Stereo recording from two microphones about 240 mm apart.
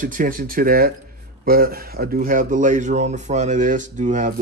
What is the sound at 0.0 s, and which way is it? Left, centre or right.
Speech, right.